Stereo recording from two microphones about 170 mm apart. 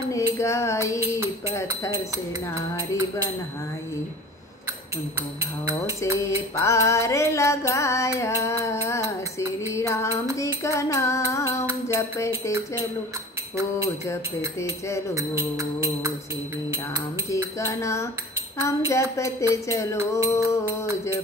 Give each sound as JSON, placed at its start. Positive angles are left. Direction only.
{"t": 0.1, "sound": "female singing", "side_deg": 15}
{"t": 6.1, "sound": "music", "side_deg": 15}
{"t": 15.1, "sound": "music", "side_deg": -15}
{"t": 17.6, "sound": "music", "side_deg": 15}